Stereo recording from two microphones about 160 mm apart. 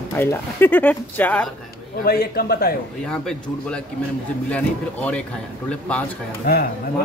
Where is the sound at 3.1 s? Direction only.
5° left (ahead or behind).